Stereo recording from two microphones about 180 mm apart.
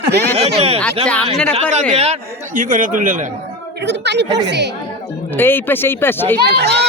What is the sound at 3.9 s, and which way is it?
Speech, 75° right (ahead or behind).